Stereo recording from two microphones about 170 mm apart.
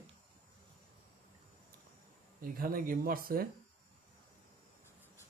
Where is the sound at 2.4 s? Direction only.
60° right (ahead or behind).